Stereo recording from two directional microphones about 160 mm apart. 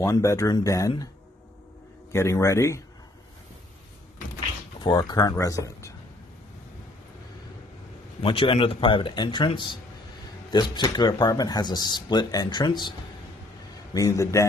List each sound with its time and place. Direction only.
0.0 s speech: 20° left (ahead or behind)
2.1 s a man's voice: 20° left (ahead or behind)
4.7 s speech: 30° left (ahead or behind)
8.2 s a man's voice: 35° left (ahead or behind)
13.9 s speech: 20° left (ahead or behind)